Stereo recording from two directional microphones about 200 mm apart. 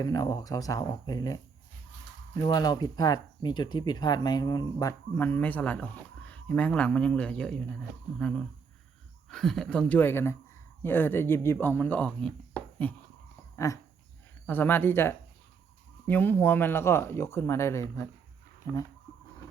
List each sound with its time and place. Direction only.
0.0 s speech: 20° left (ahead or behind)
2.4 s speech: 20° left (ahead or behind)